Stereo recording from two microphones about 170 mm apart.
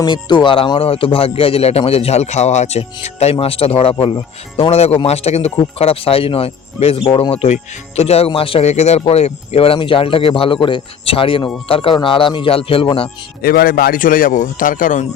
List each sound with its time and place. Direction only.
0.0 s speech: 25° left (ahead or behind)
13.4 s speech: 60° left (ahead or behind)